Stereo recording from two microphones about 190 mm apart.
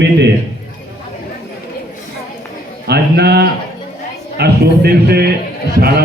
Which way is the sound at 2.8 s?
60° right (ahead or behind).